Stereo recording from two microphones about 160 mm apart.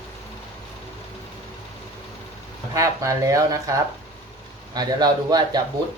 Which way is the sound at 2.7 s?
20° right (ahead or behind).